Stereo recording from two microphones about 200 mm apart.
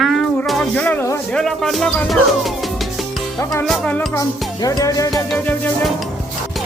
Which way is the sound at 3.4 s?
15° left (ahead or behind).